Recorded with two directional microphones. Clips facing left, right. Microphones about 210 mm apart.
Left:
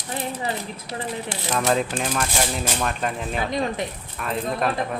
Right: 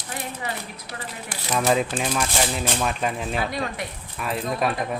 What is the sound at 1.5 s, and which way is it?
Speech, 5° right (ahead or behind).